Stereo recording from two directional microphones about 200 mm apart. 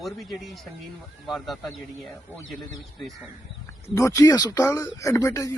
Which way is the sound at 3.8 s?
15° left (ahead or behind).